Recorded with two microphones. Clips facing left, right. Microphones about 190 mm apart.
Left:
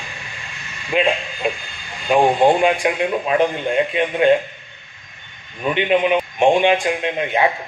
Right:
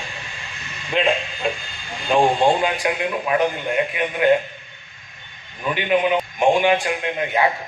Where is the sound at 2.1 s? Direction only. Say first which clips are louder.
Left 2 dB; 5° left (ahead or behind).